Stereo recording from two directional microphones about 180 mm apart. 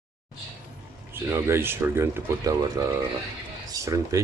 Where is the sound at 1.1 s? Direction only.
15° right (ahead or behind).